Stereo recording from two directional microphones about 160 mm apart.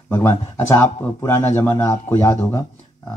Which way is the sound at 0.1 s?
15° left (ahead or behind).